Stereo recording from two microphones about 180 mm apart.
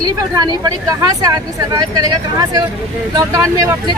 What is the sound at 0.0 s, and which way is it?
Speech, 20° right (ahead or behind).